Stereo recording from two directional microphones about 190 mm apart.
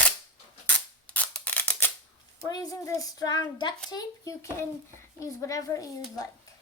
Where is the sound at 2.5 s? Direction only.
20° left (ahead or behind).